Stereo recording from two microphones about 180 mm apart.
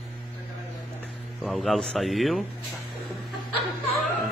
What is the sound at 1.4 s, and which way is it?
Mantra, centre (ahead or behind).